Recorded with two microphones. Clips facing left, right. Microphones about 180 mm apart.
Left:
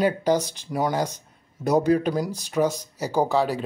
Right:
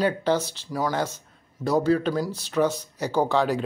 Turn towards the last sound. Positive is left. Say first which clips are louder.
# even
turn(degrees=5)  # may be behind; listen again after turning